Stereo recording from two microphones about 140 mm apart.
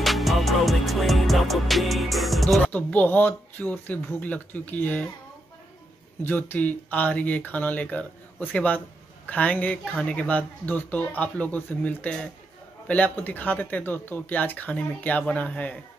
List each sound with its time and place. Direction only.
0.0 s music: centre (ahead or behind)
2.6 s speech: 10° left (ahead or behind)
6.2 s speech: 15° left (ahead or behind)